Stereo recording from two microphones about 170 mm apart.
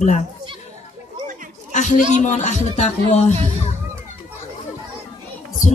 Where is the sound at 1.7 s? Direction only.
45° left (ahead or behind).